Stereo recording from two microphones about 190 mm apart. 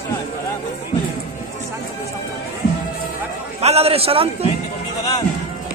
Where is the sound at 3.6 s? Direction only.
35° right (ahead or behind).